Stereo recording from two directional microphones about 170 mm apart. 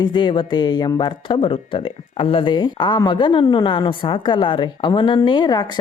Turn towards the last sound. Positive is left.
turn(degrees=25)  # may be behind; listen again after turning